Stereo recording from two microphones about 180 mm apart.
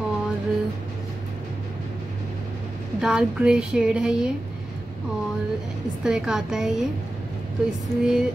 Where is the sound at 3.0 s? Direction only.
5° right (ahead or behind).